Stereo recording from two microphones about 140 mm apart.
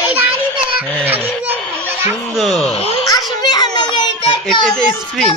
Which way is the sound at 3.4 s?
30° left (ahead or behind).